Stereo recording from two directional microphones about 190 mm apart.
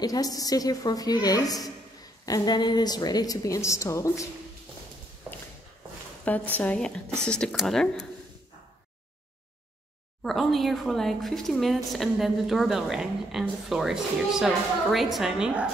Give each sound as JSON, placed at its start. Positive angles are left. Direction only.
{"t": 0.0, "sound": "a woman's voice", "side_deg": 20}
{"t": 6.2, "sound": "speech", "side_deg": 10}
{"t": 10.2, "sound": "speech", "side_deg": 0}